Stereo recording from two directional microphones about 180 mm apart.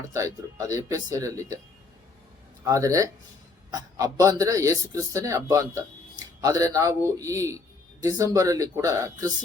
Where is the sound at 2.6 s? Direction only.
20° right (ahead or behind).